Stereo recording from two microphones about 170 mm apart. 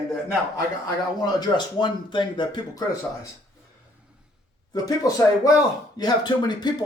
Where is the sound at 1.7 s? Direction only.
25° left (ahead or behind).